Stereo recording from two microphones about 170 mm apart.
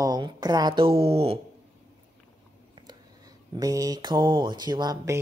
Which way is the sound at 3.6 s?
20° right (ahead or behind).